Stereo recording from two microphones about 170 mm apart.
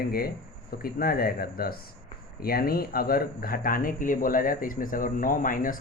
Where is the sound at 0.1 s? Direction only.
60° left (ahead or behind).